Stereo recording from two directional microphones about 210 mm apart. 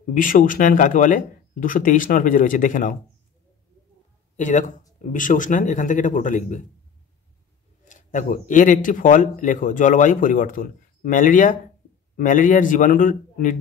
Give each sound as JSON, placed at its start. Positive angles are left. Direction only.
{"t": 0.1, "sound": "speech", "side_deg": 40}
{"t": 4.4, "sound": "speech", "side_deg": 35}
{"t": 7.8, "sound": "speech", "side_deg": 35}